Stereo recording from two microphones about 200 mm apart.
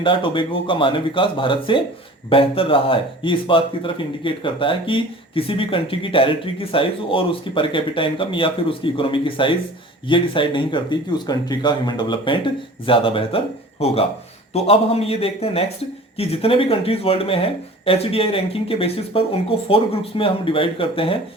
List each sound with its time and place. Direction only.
0.0 s speech: 25° left (ahead or behind)